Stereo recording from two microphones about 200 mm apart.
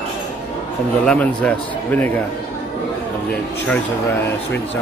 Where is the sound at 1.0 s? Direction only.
5° left (ahead or behind).